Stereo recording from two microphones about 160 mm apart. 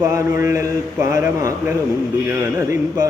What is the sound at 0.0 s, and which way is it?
Speech, 20° right (ahead or behind).